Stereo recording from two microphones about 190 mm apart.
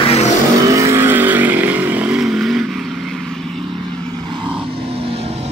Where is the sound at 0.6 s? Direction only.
15° right (ahead or behind).